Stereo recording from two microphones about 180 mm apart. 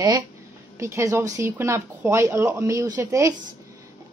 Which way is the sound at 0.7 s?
15° right (ahead or behind).